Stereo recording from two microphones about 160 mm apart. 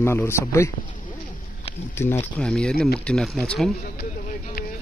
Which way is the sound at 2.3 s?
5° left (ahead or behind).